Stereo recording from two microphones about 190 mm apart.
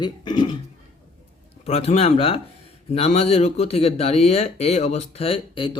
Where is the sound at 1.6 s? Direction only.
35° left (ahead or behind).